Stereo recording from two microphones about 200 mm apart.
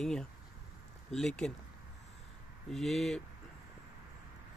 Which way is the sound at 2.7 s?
Centre (ahead or behind).